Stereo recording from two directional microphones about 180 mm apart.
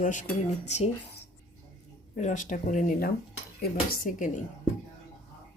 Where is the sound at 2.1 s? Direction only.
45° left (ahead or behind).